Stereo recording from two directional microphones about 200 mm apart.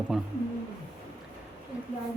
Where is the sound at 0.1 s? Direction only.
Centre (ahead or behind).